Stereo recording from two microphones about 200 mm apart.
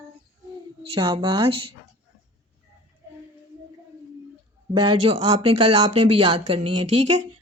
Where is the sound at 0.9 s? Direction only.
25° right (ahead or behind).